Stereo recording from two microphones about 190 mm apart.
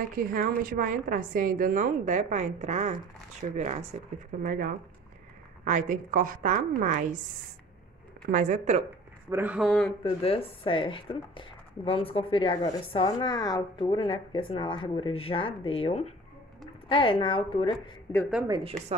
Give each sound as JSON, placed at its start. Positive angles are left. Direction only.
{"t": 0.3, "sound": "a woman's voice", "side_deg": -45}
{"t": 4.4, "sound": "a woman's voice", "side_deg": -50}
{"t": 8.3, "sound": "speech", "side_deg": -40}
{"t": 9.3, "sound": "speech", "side_deg": -10}
{"t": 10.0, "sound": "speech", "side_deg": 30}
{"t": 18.5, "sound": "speech", "side_deg": -30}